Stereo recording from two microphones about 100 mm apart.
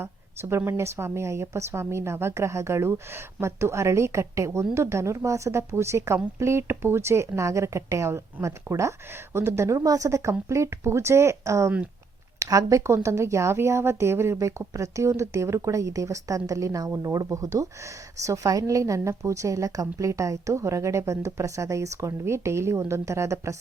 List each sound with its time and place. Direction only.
0.0 s a woman's voice: 25° right (ahead or behind)